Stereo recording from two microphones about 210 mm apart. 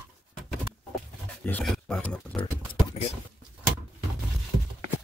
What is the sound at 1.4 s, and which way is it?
Speech, 5° left (ahead or behind).